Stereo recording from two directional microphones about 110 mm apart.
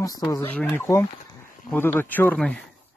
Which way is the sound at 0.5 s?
15° left (ahead or behind).